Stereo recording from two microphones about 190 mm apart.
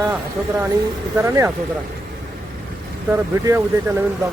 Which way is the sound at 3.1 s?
15° right (ahead or behind).